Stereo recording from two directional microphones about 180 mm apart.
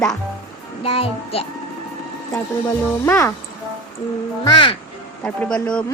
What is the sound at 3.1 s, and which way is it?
Speech, 15° left (ahead or behind).